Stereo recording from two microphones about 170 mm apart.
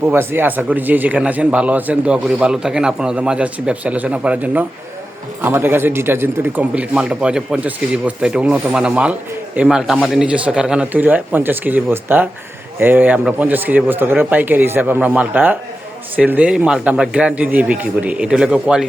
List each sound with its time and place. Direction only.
0.0 s speech: 15° right (ahead or behind)